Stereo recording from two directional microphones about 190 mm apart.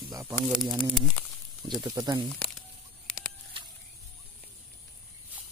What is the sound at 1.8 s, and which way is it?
Speech, 20° right (ahead or behind).